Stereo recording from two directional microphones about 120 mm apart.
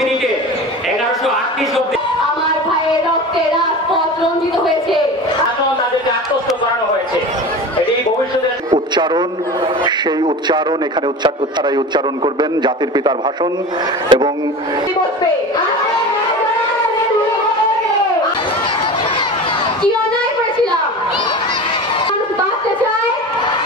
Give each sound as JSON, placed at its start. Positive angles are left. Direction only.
{"t": 12.4, "sound": "a man's voice", "side_deg": -40}